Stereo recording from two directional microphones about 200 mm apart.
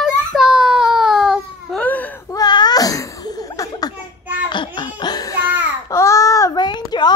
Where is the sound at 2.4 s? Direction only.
20° left (ahead or behind).